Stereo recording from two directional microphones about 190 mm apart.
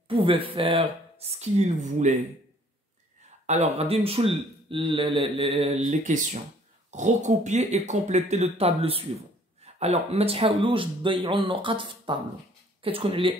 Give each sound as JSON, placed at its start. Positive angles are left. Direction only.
{"t": 0.1, "sound": "speech", "side_deg": -30}
{"t": 3.4, "sound": "speech", "side_deg": -35}
{"t": 5.9, "sound": "speech", "side_deg": -40}